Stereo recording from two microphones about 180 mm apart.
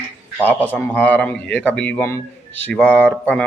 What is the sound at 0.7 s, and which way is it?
Mantra, 10° left (ahead or behind).